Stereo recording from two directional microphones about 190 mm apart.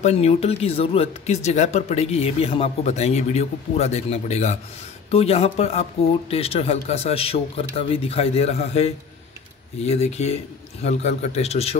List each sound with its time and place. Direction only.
0.0 s speech: 35° left (ahead or behind)